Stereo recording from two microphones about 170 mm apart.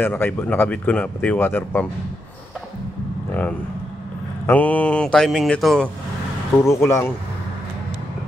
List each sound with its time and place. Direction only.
0.0 s speech: 10° left (ahead or behind)
3.3 s vehicle: 10° left (ahead or behind)
4.5 s speech: 10° left (ahead or behind)
6.6 s speech: 15° left (ahead or behind)